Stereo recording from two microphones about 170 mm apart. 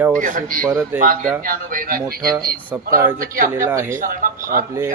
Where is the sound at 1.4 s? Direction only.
55° right (ahead or behind).